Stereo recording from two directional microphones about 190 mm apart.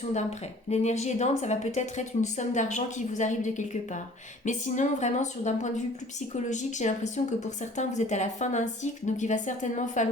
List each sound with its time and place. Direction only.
0.7 s speech: 35° left (ahead or behind)